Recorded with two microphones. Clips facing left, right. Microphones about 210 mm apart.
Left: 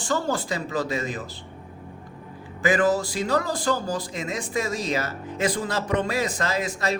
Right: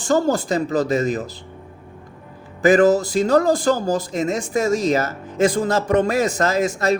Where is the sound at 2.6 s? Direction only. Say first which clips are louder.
Right 7 dB; 45° right (ahead or behind).